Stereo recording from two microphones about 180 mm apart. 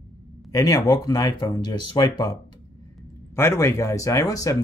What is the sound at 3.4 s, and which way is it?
Speech, 15° left (ahead or behind).